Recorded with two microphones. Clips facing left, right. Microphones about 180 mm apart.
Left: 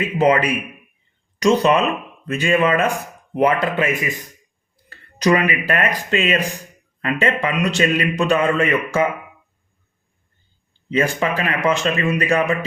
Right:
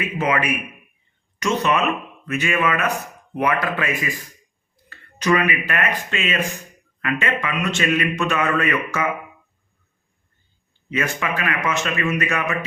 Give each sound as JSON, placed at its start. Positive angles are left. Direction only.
{"t": 0.0, "sound": "a man's voice", "side_deg": 30}
{"t": 4.9, "sound": "a man's voice", "side_deg": 35}
{"t": 10.8, "sound": "a man's voice", "side_deg": 30}